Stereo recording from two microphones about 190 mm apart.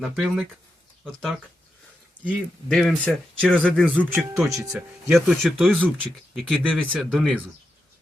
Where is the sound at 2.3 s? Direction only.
Centre (ahead or behind).